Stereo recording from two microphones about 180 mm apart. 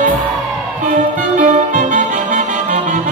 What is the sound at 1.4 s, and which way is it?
Music, 45° right (ahead or behind).